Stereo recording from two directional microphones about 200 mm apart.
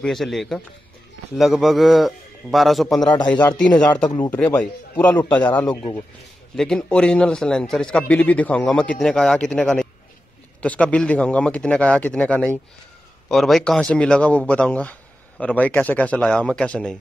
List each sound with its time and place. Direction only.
0.0 s speech: centre (ahead or behind)
3.0 s a man's voice: 20° left (ahead or behind)
3.3 s a man's voice: 5° left (ahead or behind)